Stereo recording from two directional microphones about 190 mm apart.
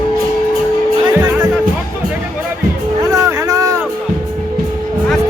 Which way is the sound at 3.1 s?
15° right (ahead or behind).